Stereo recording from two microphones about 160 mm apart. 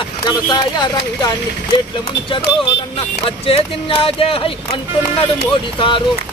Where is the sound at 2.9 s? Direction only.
35° left (ahead or behind).